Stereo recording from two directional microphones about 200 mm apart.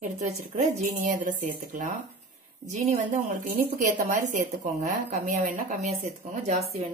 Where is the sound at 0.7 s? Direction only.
40° right (ahead or behind).